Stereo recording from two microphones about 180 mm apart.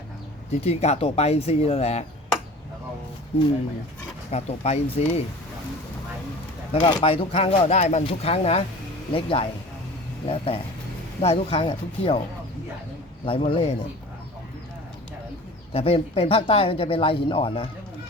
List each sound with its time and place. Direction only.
0.5 s speech: 35° left (ahead or behind)
3.3 s speech: 30° left (ahead or behind)
6.8 s a man's voice: 30° left (ahead or behind)
13.2 s a man's voice: 30° left (ahead or behind)
15.7 s speech: 30° left (ahead or behind)